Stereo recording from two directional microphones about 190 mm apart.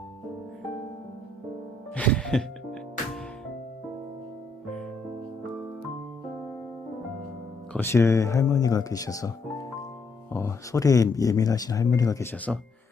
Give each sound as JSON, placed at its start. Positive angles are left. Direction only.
{"t": 2.0, "sound": "music", "side_deg": 5}
{"t": 7.7, "sound": "speech", "side_deg": 10}
{"t": 10.3, "sound": "speech", "side_deg": 15}